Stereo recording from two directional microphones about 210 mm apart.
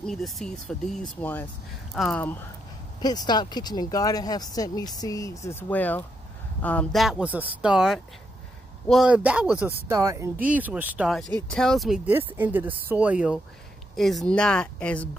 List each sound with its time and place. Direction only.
0.0 s speech: centre (ahead or behind)
3.0 s speech: 20° left (ahead or behind)